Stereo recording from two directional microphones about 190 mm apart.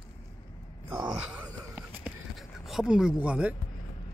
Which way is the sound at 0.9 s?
5° right (ahead or behind).